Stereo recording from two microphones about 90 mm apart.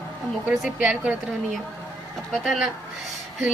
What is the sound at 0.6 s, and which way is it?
Speech, 15° right (ahead or behind).